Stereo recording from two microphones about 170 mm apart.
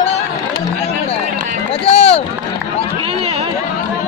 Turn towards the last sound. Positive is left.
turn(degrees=35)  # may be behind; listen again after turning